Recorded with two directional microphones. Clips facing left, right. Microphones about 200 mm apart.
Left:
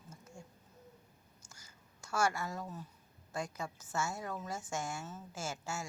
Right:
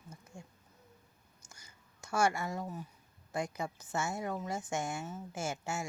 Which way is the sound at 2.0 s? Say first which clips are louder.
Right 3 dB; 15° right (ahead or behind).